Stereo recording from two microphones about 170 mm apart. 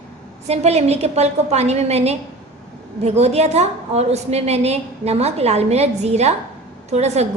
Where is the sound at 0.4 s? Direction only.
40° right (ahead or behind).